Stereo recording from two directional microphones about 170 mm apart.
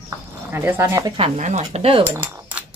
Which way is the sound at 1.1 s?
40° right (ahead or behind).